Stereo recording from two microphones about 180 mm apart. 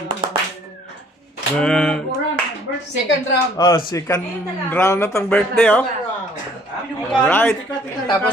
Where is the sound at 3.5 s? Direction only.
25° left (ahead or behind).